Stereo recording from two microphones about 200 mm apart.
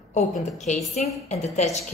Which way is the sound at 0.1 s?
35° left (ahead or behind).